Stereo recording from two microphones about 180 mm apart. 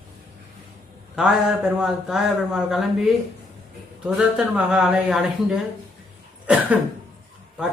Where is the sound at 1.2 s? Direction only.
5° right (ahead or behind).